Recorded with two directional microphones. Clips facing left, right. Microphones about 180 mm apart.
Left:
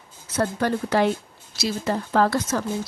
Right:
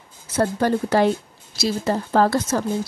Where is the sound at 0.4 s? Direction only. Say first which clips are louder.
Right 3 dB; 30° right (ahead or behind).